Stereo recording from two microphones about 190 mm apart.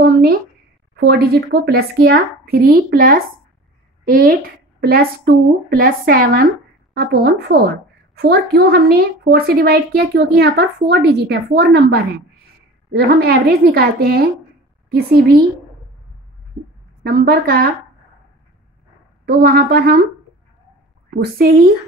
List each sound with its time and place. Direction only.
0.0 s a sound: 55° right (ahead or behind)
0.9 s a woman's voice: 60° right (ahead or behind)
17.0 s a woman's voice: 60° right (ahead or behind)
19.2 s a woman's voice: 55° right (ahead or behind)